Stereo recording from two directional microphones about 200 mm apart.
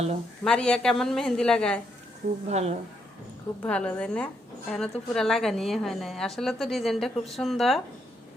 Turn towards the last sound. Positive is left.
turn(degrees=0)  # may be behind; listen again after turning